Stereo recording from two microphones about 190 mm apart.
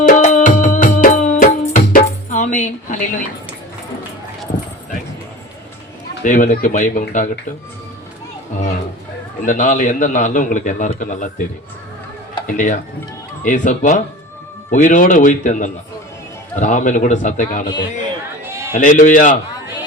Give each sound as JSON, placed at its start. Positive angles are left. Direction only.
{"t": 0.0, "sound": "music", "side_deg": 40}
{"t": 6.2, "sound": "a man's voice", "side_deg": 45}
{"t": 9.5, "sound": "a man's voice", "side_deg": 45}
{"t": 12.5, "sound": "a man's voice", "side_deg": 45}
{"t": 18.4, "sound": "a sound", "side_deg": -15}
{"t": 18.7, "sound": "a man's voice", "side_deg": 45}